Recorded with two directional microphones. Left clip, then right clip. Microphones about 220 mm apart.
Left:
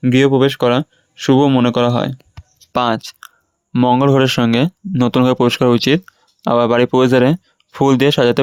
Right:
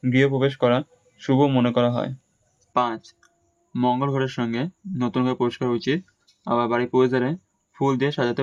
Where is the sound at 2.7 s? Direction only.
45° left (ahead or behind).